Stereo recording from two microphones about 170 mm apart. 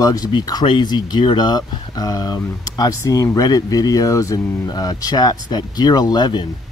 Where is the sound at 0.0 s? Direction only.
20° left (ahead or behind).